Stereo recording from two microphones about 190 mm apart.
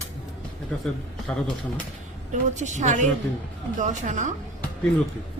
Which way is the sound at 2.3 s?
40° right (ahead or behind).